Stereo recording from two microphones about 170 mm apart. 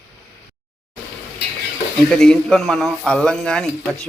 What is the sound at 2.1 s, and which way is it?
A man's voice, 5° left (ahead or behind).